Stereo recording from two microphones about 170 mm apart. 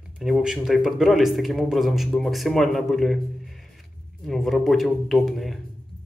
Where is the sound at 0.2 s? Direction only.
5° right (ahead or behind).